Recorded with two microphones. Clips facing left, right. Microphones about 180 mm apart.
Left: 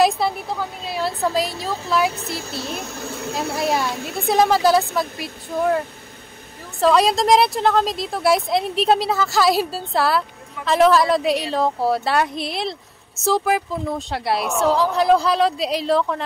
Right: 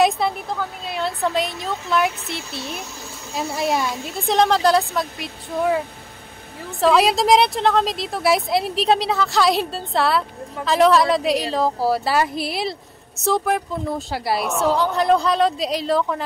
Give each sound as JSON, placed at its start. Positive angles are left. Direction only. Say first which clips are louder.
{"t": 0.0, "sound": "a woman's voice", "louder": "even", "side_deg": 5}
{"t": 3.0, "sound": "speech", "louder": "left 8 dB", "side_deg": 65}
{"t": 3.5, "sound": "a woman's voice", "louder": "right 1 dB", "side_deg": 0}